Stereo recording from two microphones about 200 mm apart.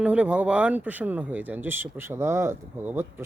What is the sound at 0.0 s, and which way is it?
Speech, 5° right (ahead or behind).